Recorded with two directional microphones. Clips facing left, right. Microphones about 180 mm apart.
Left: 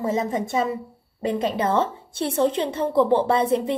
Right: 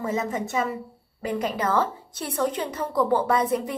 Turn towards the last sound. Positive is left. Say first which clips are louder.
# left 3 dB
turn(degrees=30)  # may be behind; listen again after turning